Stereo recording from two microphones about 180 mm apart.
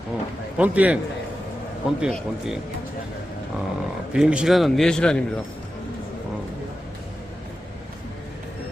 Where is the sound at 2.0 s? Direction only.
Centre (ahead or behind).